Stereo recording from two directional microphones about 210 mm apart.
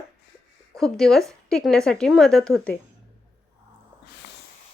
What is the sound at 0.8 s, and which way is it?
A woman's voice, centre (ahead or behind).